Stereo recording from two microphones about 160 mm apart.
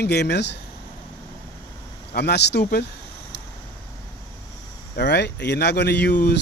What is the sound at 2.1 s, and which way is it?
Speech, 90° left.